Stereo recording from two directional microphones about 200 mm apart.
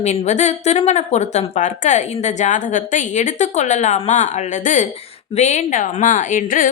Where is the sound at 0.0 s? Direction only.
35° left (ahead or behind).